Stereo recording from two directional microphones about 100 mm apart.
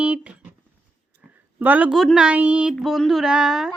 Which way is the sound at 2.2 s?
15° right (ahead or behind).